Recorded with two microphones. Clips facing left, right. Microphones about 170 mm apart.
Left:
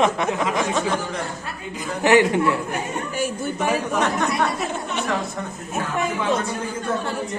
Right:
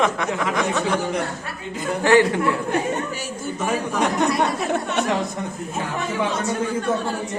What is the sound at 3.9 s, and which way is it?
Speech, 20° right (ahead or behind).